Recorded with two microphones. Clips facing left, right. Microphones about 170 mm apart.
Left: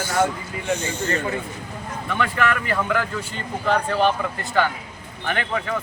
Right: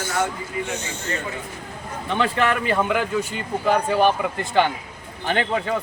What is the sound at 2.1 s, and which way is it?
Speech, 25° right (ahead or behind).